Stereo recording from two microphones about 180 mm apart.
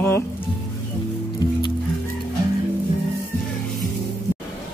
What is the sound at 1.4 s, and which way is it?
Music, 20° left (ahead or behind).